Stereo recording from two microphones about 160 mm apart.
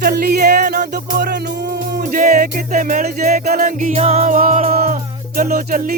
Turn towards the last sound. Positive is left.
turn(degrees=-65)  # may be behind; listen again after turning